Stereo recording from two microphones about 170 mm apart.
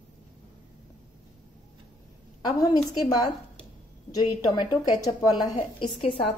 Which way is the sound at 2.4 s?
25° left (ahead or behind).